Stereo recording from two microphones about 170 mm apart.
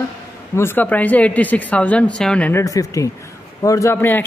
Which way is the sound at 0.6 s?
10° left (ahead or behind).